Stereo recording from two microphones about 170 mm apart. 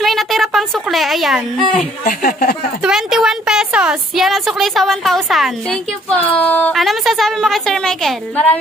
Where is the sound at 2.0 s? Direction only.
60° left (ahead or behind).